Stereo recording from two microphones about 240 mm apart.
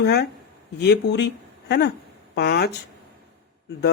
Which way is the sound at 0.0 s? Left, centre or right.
Left.